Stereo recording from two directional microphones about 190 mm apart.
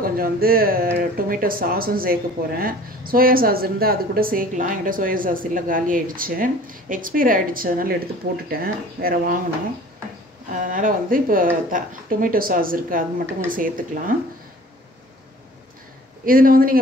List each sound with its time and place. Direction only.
0.0 s speech: 50° right (ahead or behind)
10.6 s speech: 45° right (ahead or behind)
16.3 s speech: 50° right (ahead or behind)